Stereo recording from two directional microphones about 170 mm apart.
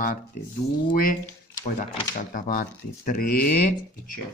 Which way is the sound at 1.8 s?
55° left (ahead or behind).